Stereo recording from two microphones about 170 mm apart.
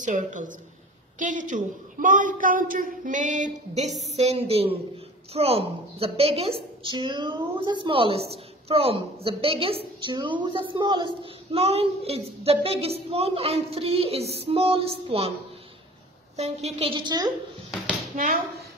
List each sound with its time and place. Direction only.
0.0 s a woman's voice: 45° right (ahead or behind)
16.3 s a woman's voice: 40° right (ahead or behind)
18.1 s speech: 50° right (ahead or behind)